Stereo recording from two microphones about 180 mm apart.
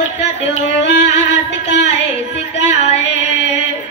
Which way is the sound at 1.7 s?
80° left.